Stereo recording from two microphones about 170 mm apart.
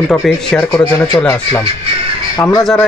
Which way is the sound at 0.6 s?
15° left (ahead or behind).